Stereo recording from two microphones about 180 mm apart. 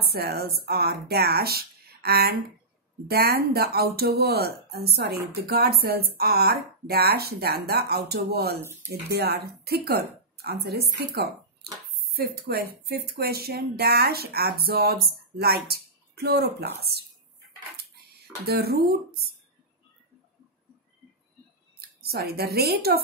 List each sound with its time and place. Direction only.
0.0 s speech: 60° right (ahead or behind)
8.5 s speech: 15° right (ahead or behind)
9.1 s speech: 60° right (ahead or behind)
18.5 s speech: 60° right (ahead or behind)
22.0 s speech: 60° right (ahead or behind)